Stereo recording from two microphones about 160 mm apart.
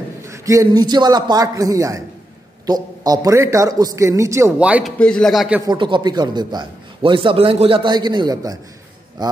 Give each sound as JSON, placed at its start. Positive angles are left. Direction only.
{"t": 0.3, "sound": "a man's voice", "side_deg": -20}
{"t": 4.6, "sound": "a man's voice", "side_deg": -5}
{"t": 4.9, "sound": "a man's voice", "side_deg": 5}
{"t": 5.7, "sound": "a man's voice", "side_deg": -30}